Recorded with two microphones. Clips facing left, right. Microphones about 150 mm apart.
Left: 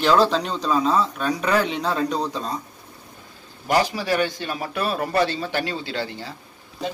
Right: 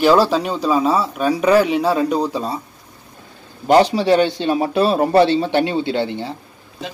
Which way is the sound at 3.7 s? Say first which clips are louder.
Right 8 dB; 25° right (ahead or behind).